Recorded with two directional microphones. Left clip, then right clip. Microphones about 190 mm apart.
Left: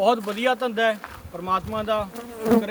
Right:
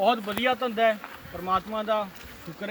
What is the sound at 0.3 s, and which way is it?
Speech, 5° left (ahead or behind).